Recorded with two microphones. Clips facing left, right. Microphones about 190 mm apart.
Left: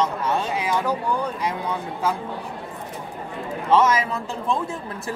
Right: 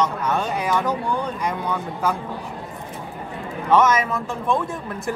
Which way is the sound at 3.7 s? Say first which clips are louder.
Right 1 dB; 30° left (ahead or behind).